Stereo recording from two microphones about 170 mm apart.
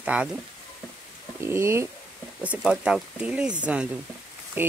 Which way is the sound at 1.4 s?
15° right (ahead or behind).